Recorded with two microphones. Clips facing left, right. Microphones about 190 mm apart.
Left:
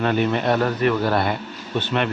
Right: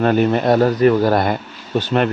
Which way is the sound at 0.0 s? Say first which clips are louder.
Right 5 dB; 40° right (ahead or behind).